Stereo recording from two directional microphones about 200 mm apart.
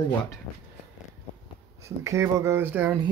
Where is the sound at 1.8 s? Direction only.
15° right (ahead or behind).